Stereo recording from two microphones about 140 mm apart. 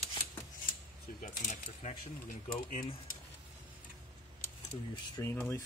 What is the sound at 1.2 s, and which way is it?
Speech, 65° left (ahead or behind).